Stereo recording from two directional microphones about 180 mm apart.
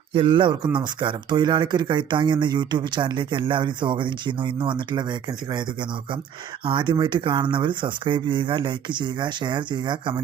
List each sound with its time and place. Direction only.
0.1 s speech: 30° right (ahead or behind)
6.7 s speech: 25° right (ahead or behind)